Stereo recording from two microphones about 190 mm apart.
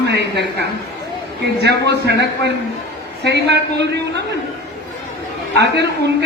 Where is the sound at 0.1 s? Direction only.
65° right (ahead or behind).